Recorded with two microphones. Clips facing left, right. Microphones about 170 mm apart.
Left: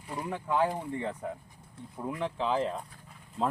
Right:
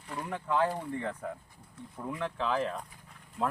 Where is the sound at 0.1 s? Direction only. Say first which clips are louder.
Left 1 dB; 10° left (ahead or behind).